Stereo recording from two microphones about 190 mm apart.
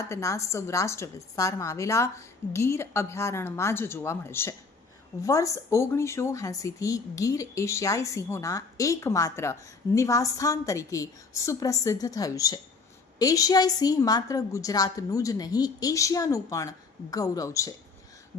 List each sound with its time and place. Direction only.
0.0 s a woman's voice: 15° left (ahead or behind)